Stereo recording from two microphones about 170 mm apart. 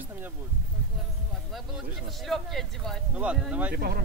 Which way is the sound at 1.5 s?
Centre (ahead or behind).